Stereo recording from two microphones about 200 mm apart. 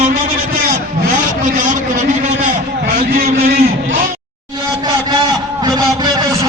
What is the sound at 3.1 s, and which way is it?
Vehicle, 50° right (ahead or behind).